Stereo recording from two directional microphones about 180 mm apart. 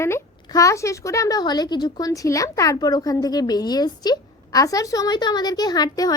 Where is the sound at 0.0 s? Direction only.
15° left (ahead or behind).